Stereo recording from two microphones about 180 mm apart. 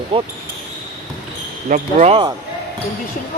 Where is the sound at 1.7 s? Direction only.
40° right (ahead or behind).